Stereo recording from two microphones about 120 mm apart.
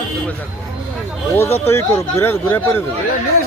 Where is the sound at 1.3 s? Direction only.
20° left (ahead or behind).